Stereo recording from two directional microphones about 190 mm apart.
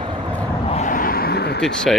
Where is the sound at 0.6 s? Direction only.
40° left (ahead or behind); by 1.6 s 55° left (ahead or behind).